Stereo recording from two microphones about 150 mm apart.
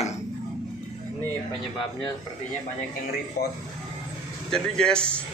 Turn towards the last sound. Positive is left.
turn(degrees=5)  # may be behind; listen again after turning